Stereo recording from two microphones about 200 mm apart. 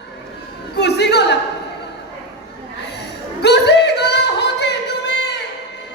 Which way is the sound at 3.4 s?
60° left (ahead or behind).